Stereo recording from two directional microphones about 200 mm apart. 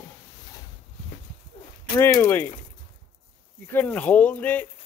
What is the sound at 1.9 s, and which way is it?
Speech, 15° left (ahead or behind).